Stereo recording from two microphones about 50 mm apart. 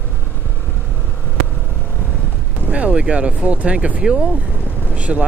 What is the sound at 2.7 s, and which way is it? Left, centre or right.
Speech, right.